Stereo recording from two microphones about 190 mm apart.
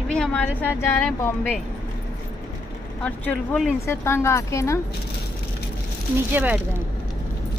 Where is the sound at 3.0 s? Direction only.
5° left (ahead or behind).